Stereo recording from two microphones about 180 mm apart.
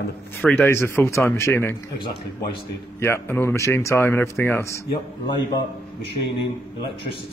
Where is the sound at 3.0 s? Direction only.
15° left (ahead or behind).